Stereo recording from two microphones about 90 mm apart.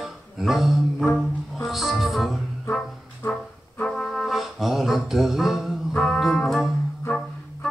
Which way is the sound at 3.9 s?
Centre (ahead or behind).